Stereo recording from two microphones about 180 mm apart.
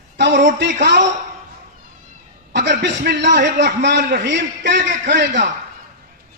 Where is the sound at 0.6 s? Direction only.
70° right (ahead or behind).